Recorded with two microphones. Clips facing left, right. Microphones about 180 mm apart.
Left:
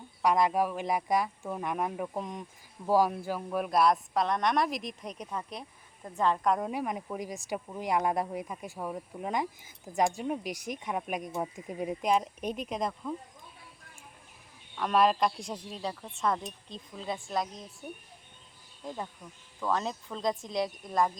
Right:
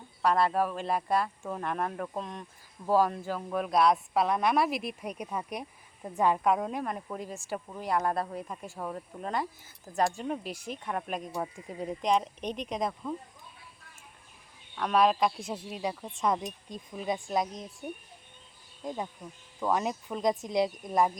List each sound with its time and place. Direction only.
0.2 s speech: 15° left (ahead or behind)
6.8 s speech: 15° left (ahead or behind)
14.8 s speech: centre (ahead or behind); by 17.5 s 20° right (ahead or behind)
19.5 s speech: 15° right (ahead or behind)